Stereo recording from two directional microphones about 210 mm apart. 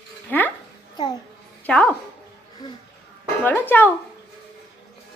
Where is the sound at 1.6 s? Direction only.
5° left (ahead or behind).